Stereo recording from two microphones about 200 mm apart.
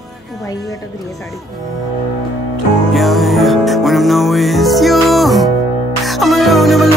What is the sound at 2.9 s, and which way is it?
Music, centre (ahead or behind).